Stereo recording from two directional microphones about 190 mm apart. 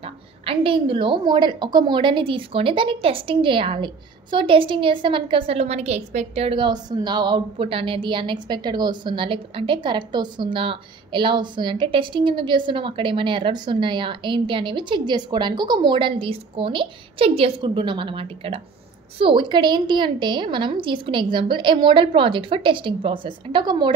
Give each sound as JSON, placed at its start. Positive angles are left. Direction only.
{"t": 0.0, "sound": "a woman's voice", "side_deg": -30}